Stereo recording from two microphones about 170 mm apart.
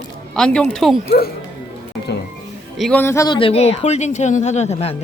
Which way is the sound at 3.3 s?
35° left (ahead or behind).